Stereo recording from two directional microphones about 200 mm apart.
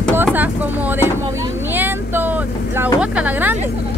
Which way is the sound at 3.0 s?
5° right (ahead or behind).